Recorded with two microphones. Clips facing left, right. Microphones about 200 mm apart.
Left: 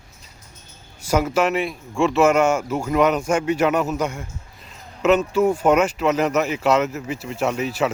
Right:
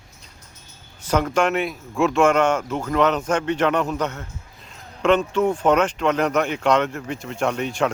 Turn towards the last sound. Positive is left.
turn(degrees=5)  # may be behind; listen again after turning